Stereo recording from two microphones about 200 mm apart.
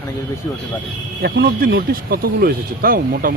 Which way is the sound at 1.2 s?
50° right (ahead or behind).